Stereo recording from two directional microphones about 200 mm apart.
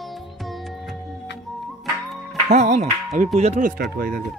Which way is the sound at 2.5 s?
35° right (ahead or behind).